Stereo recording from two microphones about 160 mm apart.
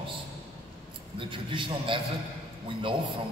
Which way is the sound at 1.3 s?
30° right (ahead or behind).